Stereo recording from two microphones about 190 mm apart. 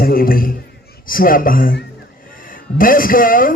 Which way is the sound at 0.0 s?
50° left (ahead or behind).